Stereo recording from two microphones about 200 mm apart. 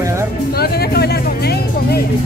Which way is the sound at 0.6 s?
50° left (ahead or behind).